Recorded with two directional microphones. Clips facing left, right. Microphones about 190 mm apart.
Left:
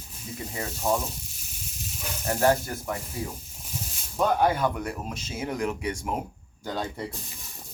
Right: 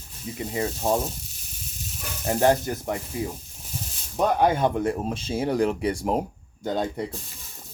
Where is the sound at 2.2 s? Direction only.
20° right (ahead or behind).